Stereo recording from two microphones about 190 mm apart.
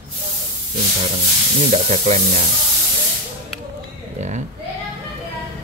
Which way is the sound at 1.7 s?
35° right (ahead or behind).